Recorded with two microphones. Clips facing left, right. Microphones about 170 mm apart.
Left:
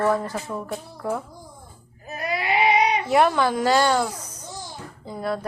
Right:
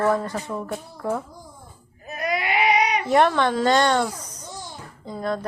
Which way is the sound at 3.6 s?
5° left (ahead or behind).